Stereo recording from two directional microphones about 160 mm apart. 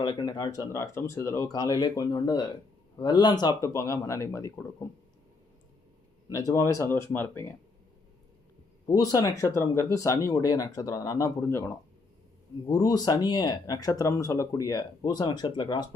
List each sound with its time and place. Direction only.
0.0 s speech: 25° left (ahead or behind)
6.3 s speech: 20° left (ahead or behind)
8.9 s speech: 25° left (ahead or behind)